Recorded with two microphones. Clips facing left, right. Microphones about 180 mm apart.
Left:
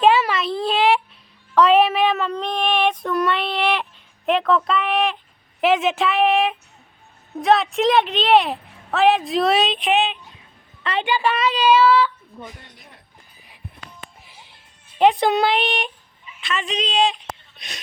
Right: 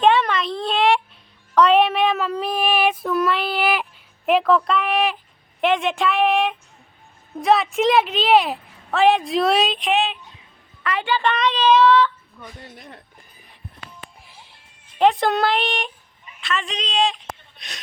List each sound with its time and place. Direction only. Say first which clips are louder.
0.0 s a sound: left 1 dB; 5° left (ahead or behind)
1.5 s child singing: left 1 dB; centre (ahead or behind)
4.3 s a woman's voice: right 1 dB; centre (ahead or behind)
12.3 s speech: left 4 dB; 45° left (ahead or behind)
14.9 s a woman's voice: left 1 dB; centre (ahead or behind)